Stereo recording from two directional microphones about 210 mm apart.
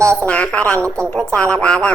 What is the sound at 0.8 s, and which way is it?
Speech, 15° right (ahead or behind).